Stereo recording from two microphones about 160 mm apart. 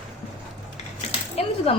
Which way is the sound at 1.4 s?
40° left (ahead or behind).